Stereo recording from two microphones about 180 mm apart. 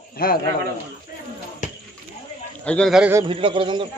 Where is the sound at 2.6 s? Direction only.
5° left (ahead or behind).